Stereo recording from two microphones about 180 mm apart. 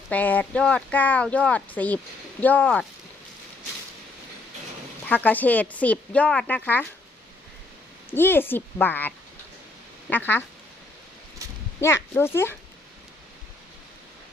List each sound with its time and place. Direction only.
0.1 s speech: 10° left (ahead or behind)
5.0 s speech: 10° left (ahead or behind)
8.1 s speech: 10° left (ahead or behind)
11.8 s speech: 15° left (ahead or behind)